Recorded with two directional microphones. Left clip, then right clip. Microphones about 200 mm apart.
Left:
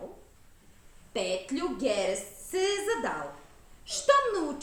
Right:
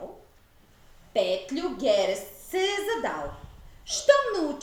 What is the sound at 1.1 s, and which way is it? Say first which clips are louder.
A woman's voice: right 5 dB; 15° left (ahead or behind).